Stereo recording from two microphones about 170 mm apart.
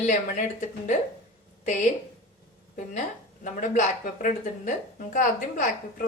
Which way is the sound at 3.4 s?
50° left (ahead or behind).